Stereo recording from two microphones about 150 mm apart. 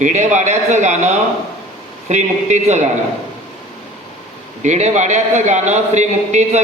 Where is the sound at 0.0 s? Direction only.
55° right (ahead or behind).